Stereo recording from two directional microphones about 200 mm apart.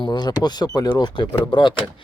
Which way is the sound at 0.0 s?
20° left (ahead or behind).